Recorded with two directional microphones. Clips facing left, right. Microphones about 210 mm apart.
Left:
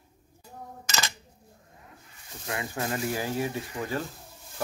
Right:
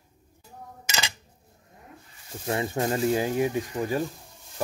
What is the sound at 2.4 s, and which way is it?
Speech, 30° right (ahead or behind).